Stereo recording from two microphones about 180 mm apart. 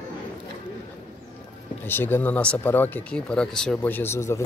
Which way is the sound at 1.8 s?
10° left (ahead or behind).